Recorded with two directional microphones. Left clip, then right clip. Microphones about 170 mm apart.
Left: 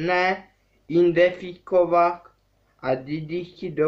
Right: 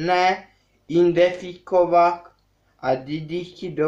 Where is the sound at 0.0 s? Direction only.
5° left (ahead or behind).